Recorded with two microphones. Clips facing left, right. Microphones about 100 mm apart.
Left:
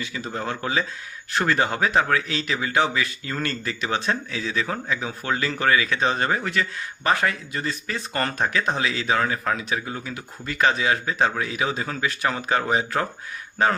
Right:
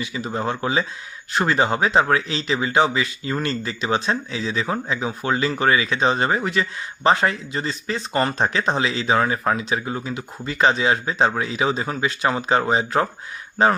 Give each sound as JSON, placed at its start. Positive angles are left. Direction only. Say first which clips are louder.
{"t": 0.0, "sound": "speech", "louder": "right 4 dB", "side_deg": -20}